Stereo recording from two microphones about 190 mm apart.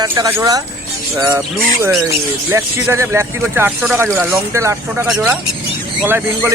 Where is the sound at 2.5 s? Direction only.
15° right (ahead or behind).